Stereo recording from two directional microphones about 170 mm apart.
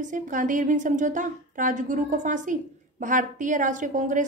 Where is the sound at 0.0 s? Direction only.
50° right (ahead or behind).